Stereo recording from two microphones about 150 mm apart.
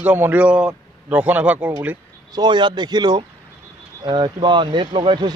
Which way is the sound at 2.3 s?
30° right (ahead or behind).